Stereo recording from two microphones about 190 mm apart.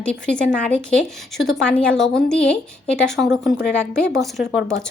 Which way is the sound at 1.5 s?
5° left (ahead or behind).